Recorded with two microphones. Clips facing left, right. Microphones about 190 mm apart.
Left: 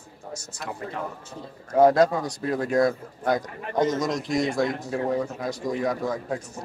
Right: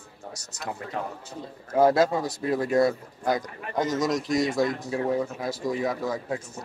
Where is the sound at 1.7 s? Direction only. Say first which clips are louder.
Left 2 dB; 5° right (ahead or behind).